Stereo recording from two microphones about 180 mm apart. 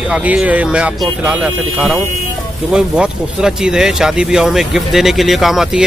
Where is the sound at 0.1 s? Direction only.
5° right (ahead or behind).